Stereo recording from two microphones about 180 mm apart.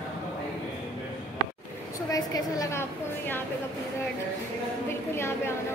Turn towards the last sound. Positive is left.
turn(degrees=15)  # may be behind; listen again after turning